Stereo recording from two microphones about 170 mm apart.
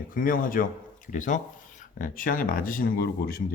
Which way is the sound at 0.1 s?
55° left (ahead or behind).